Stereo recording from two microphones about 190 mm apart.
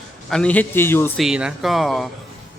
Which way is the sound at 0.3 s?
5° left (ahead or behind).